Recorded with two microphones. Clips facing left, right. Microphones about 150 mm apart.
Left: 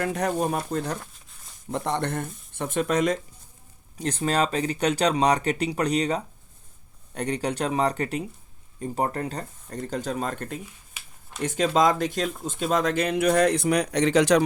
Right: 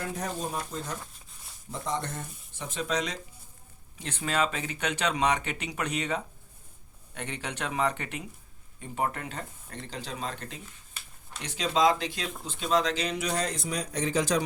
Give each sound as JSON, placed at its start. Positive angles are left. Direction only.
{"t": 0.0, "sound": "speech", "side_deg": 70}
{"t": 3.9, "sound": "speech", "side_deg": 40}